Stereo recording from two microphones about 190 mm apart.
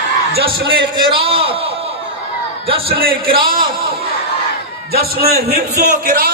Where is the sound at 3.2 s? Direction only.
30° right (ahead or behind).